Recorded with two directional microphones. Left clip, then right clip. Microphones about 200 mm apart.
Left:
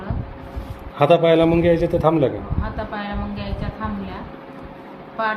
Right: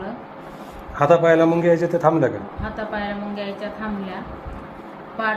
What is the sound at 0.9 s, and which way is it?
A man's voice, 20° left (ahead or behind).